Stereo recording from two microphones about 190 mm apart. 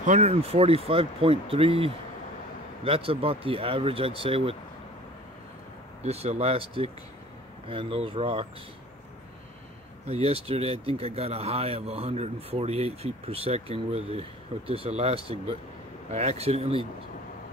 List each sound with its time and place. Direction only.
0.0 s speech: 35° right (ahead or behind)
6.0 s speech: 35° right (ahead or behind)
10.0 s speech: 30° right (ahead or behind)